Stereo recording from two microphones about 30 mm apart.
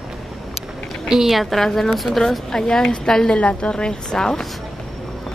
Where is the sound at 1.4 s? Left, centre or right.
Centre.